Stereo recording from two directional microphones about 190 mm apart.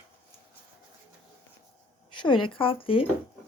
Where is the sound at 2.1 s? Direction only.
25° left (ahead or behind).